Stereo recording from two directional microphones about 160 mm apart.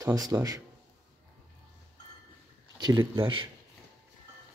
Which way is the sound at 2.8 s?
20° right (ahead or behind).